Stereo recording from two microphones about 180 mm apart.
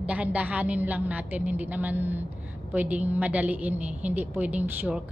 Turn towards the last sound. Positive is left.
turn(degrees=-10)  # may be behind; listen again after turning